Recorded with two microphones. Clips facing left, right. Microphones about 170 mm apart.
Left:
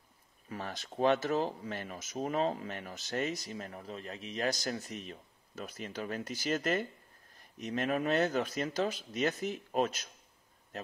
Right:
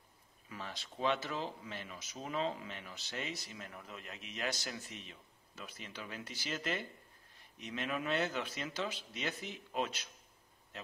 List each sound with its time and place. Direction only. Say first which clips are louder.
0.5 s speech: left 6 dB; 50° left (ahead or behind)